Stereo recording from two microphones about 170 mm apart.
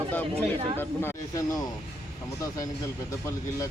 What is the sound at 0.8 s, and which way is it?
Speech, 15° left (ahead or behind).